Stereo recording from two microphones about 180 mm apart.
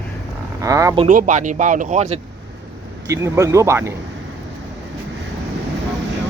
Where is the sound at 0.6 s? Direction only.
20° right (ahead or behind).